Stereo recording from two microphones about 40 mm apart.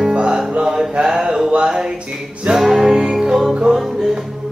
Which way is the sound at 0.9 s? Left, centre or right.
Centre.